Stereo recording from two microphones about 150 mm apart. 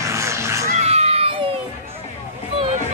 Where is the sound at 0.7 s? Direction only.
45° right (ahead or behind).